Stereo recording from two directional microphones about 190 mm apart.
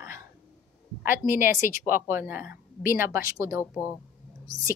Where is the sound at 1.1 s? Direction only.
40° left (ahead or behind).